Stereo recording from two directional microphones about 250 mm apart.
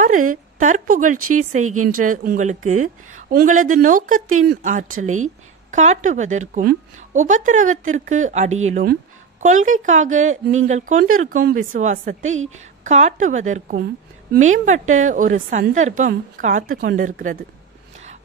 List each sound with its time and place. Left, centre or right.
0.3 s a woman's voice: right
1.5 s speech: right
2.0 s a woman's voice: right